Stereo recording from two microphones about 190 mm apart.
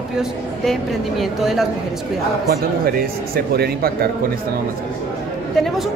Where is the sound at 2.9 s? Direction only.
55° right (ahead or behind).